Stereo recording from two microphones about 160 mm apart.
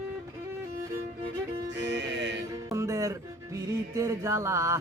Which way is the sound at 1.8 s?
90° right.